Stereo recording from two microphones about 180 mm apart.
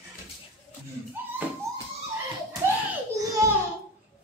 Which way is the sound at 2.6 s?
15° right (ahead or behind).